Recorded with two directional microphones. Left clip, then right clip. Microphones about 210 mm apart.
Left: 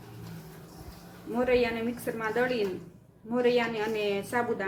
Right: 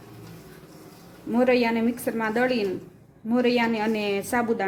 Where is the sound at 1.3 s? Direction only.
35° right (ahead or behind).